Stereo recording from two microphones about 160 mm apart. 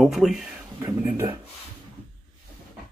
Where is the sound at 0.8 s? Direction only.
20° right (ahead or behind).